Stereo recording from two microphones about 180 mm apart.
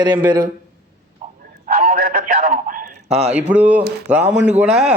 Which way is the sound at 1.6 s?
40° right (ahead or behind).